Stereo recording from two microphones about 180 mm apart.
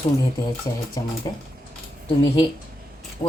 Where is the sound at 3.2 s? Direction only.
30° left (ahead or behind).